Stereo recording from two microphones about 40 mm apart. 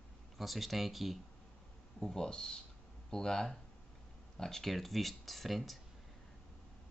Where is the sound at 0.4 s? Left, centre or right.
Centre.